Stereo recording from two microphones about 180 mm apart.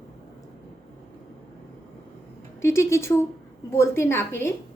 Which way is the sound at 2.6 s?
15° left (ahead or behind).